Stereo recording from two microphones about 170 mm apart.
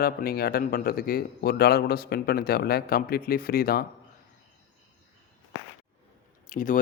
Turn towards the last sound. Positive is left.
turn(degrees=50)  # may be behind; listen again after turning